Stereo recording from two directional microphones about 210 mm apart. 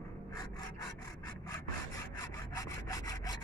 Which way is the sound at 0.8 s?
15° left (ahead or behind).